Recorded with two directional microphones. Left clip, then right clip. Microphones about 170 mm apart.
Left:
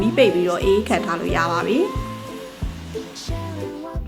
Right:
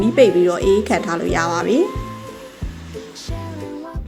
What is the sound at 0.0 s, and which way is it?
A woman's voice, 20° right (ahead or behind).